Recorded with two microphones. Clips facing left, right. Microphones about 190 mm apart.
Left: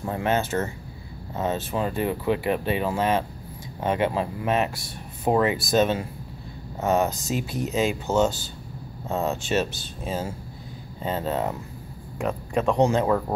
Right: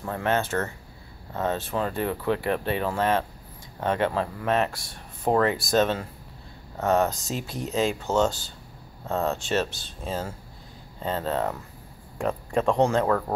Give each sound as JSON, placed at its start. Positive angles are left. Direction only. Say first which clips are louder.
{"t": 0.0, "sound": "speech", "louder": "left 1 dB", "side_deg": 10}